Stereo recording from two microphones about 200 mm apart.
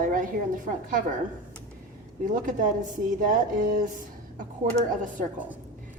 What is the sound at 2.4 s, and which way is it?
A woman's voice, 40° right (ahead or behind).